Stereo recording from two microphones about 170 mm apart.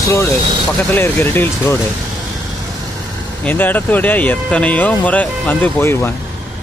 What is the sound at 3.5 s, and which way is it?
Speech, 10° left (ahead or behind).